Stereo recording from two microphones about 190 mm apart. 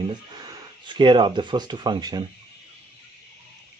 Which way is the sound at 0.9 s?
25° right (ahead or behind).